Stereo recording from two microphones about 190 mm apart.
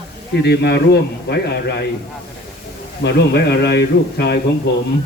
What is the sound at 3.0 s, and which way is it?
Speech, 60° left (ahead or behind).